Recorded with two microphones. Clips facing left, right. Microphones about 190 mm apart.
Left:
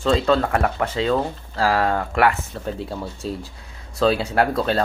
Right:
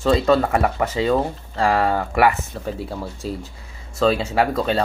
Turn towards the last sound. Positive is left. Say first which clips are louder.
# even
turn(degrees=0)  # may be behind; listen again after turning